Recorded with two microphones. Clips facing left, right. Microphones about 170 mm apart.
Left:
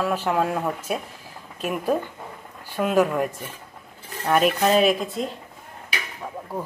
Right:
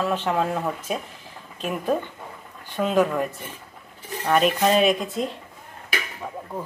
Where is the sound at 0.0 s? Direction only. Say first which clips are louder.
Left 1 dB; 10° left (ahead or behind).